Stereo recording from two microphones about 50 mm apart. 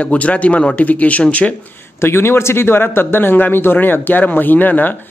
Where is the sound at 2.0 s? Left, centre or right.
Left.